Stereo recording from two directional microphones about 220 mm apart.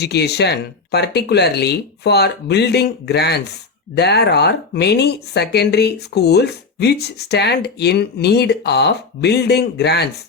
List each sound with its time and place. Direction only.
0.0 s speech: 50° left (ahead or behind)